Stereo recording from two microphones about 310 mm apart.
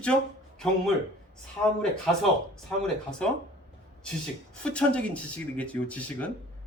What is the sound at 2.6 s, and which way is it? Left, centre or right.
Speech, centre.